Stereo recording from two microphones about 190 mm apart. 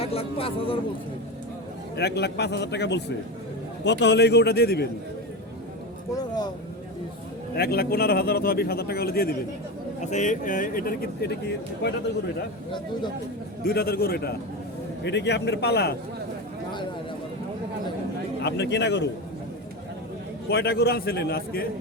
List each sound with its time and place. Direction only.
0.0 s speech: 30° left (ahead or behind)
2.0 s a man's voice: 60° left (ahead or behind)
6.1 s speech: 20° left (ahead or behind)
7.5 s a man's voice: 55° left (ahead or behind)
10.0 s speech: 40° left (ahead or behind); by 11.9 s 60° left (ahead or behind)
13.7 s a man's voice: 55° left (ahead or behind)
18.4 s a man's voice: 60° left (ahead or behind)
20.5 s a man's voice: 55° left (ahead or behind)